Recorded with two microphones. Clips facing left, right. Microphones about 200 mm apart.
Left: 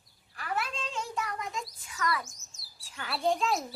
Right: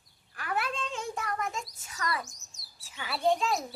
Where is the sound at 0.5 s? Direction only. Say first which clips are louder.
Right 1 dB; 55° right (ahead or behind).